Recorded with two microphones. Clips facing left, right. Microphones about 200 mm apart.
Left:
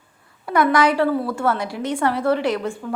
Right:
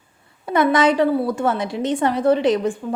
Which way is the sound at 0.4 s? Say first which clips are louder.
Right 1 dB; 20° right (ahead or behind).